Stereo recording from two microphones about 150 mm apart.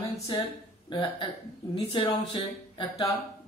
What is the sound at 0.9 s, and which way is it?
Speech, 30° left (ahead or behind).